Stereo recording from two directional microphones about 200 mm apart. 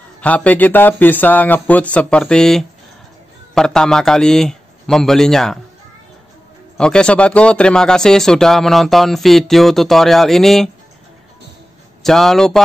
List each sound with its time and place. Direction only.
0.2 s a man's voice: 5° left (ahead or behind)
6.8 s speech: 5° left (ahead or behind)
12.0 s speech: centre (ahead or behind)